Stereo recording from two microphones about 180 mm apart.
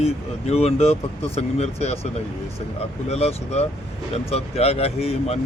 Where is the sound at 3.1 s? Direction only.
35° left (ahead or behind).